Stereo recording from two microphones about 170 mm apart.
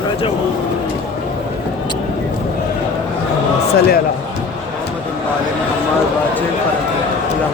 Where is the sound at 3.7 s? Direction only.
65° left (ahead or behind).